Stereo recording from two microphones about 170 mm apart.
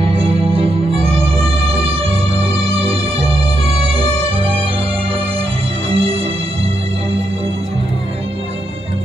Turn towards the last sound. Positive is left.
turn(degrees=-35)  # may be behind; listen again after turning